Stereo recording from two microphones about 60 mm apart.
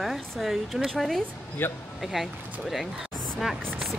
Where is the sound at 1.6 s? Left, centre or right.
Left.